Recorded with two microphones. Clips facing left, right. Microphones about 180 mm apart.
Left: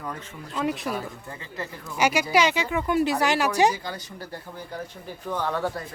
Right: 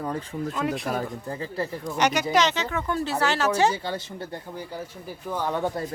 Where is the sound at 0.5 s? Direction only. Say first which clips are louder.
Left 3 dB; centre (ahead or behind).